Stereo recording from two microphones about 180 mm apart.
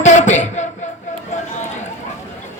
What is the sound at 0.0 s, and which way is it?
Music, 40° left (ahead or behind).